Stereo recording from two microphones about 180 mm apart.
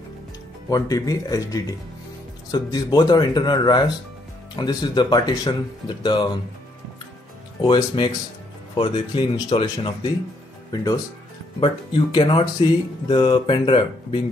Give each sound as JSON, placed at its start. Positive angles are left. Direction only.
{"t": 0.7, "sound": "speech", "side_deg": 20}
{"t": 7.6, "sound": "speech", "side_deg": 25}